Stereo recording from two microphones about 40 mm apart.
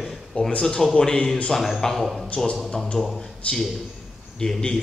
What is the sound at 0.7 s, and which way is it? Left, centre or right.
Speech, centre.